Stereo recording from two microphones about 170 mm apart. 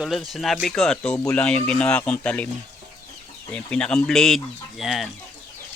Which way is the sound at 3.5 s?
5° left (ahead or behind).